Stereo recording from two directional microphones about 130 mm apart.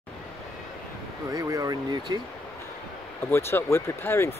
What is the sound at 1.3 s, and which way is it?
Speech, 25° right (ahead or behind).